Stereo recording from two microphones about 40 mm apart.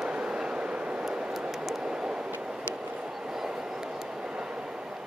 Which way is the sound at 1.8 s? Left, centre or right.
Centre.